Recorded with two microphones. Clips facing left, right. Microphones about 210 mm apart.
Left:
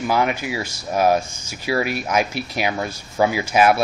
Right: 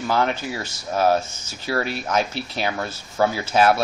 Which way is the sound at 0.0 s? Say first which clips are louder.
Left 2 dB; 10° left (ahead or behind).